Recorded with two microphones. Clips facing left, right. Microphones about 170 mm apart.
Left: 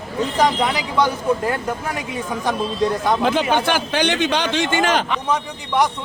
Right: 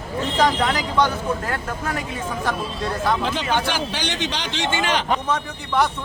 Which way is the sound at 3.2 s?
55° left (ahead or behind).